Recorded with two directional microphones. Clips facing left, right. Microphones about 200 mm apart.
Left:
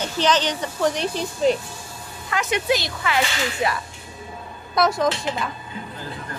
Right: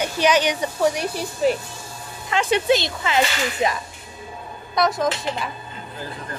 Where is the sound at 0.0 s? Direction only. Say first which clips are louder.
Right 2 dB; 10° right (ahead or behind).